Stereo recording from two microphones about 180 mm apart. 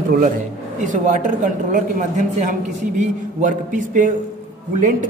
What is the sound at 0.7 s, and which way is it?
A man's voice, 45° right (ahead or behind).